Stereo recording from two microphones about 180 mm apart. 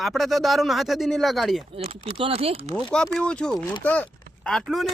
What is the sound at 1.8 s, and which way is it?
Speech, 30° right (ahead or behind).